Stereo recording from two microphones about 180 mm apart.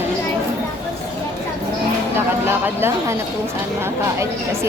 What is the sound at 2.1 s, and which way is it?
Speech, 10° right (ahead or behind).